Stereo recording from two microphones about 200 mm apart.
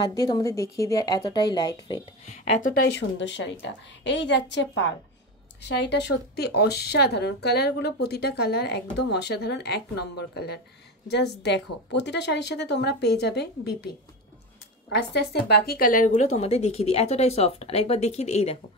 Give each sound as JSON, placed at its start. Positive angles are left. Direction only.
{"t": 0.1, "sound": "speech", "side_deg": 20}
{"t": 2.2, "sound": "speech", "side_deg": 35}
{"t": 2.9, "sound": "speech", "side_deg": 65}
{"t": 15.0, "sound": "speech", "side_deg": 55}
{"t": 16.3, "sound": "speech", "side_deg": 30}